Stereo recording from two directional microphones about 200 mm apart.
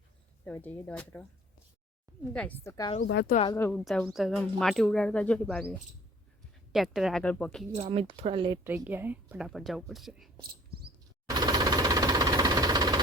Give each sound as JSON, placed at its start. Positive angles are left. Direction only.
{"t": 0.4, "sound": "speech", "side_deg": 10}
{"t": 2.3, "sound": "speech", "side_deg": 5}
{"t": 3.1, "sound": "speech", "side_deg": 60}
{"t": 3.4, "sound": "speech", "side_deg": 15}
{"t": 3.7, "sound": "a woman's voice", "side_deg": 0}
{"t": 6.7, "sound": "a woman's voice", "side_deg": 0}
{"t": 7.8, "sound": "speech", "side_deg": -30}
{"t": 8.6, "sound": "a woman's voice", "side_deg": -10}
{"t": 11.3, "sound": "engine", "side_deg": -20}